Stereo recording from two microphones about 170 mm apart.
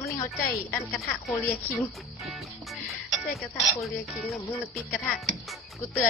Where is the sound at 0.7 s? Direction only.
5° left (ahead or behind).